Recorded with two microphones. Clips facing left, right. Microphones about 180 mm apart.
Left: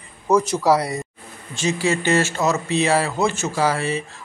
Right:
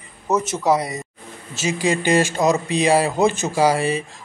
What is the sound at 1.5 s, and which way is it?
A man's voice, 10° right (ahead or behind).